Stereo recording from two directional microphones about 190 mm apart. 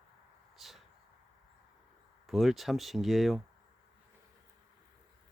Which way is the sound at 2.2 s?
Centre (ahead or behind).